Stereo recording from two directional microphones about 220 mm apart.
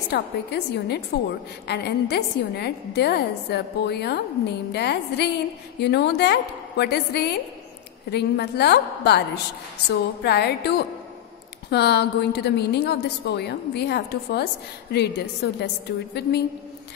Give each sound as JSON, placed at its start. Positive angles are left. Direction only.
{"t": 0.1, "sound": "a woman's voice", "side_deg": 50}